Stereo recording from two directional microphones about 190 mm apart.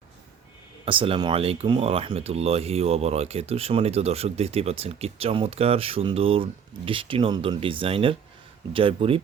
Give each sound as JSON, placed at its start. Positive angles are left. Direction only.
{"t": 0.9, "sound": "speech", "side_deg": -30}